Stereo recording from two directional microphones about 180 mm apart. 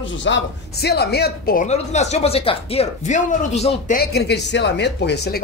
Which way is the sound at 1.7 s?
40° left (ahead or behind).